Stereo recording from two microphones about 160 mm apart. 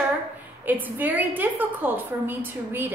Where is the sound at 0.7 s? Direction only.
10° right (ahead or behind).